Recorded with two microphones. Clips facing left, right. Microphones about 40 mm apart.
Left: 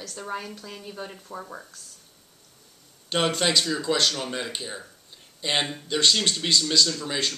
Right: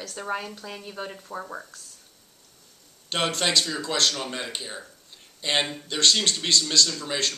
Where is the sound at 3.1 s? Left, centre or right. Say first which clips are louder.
Left 1 dB; centre.